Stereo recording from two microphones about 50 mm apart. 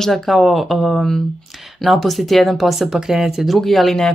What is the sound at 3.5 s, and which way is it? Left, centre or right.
Speech, centre.